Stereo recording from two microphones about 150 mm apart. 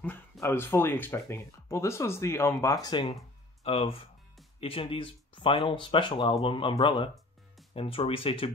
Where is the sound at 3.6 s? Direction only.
40° left (ahead or behind).